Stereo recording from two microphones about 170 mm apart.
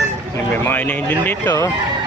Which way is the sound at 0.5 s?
10° left (ahead or behind).